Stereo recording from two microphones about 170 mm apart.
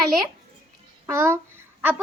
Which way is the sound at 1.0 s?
15° right (ahead or behind).